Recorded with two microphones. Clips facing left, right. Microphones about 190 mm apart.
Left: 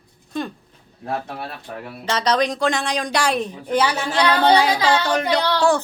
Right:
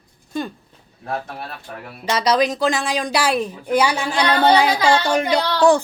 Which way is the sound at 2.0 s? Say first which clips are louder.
Right 2 dB; 10° right (ahead or behind).